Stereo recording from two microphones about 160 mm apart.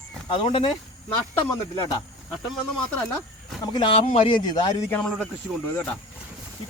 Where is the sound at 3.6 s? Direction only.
30° left (ahead or behind).